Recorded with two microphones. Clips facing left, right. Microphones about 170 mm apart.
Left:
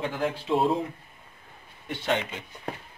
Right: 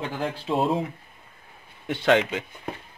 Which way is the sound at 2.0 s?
90° right.